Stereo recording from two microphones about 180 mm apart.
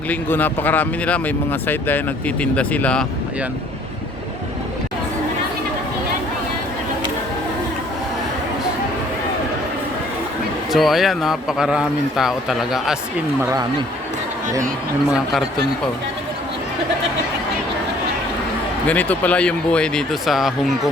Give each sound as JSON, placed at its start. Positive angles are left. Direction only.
{"t": 0.1, "sound": "speech", "side_deg": 10}
{"t": 10.7, "sound": "a man's voice", "side_deg": 0}
{"t": 13.4, "sound": "speech", "side_deg": -20}
{"t": 15.1, "sound": "a man's voice", "side_deg": 0}
{"t": 18.9, "sound": "a man's voice", "side_deg": 10}